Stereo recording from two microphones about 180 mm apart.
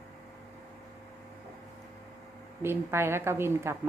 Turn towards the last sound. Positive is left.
turn(degrees=-15)  # may be behind; listen again after turning